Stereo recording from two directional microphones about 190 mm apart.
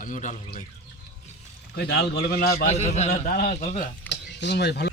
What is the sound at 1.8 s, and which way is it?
Speech, 55° left (ahead or behind).